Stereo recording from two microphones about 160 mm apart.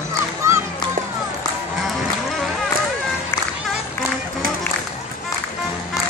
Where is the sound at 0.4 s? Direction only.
20° right (ahead or behind).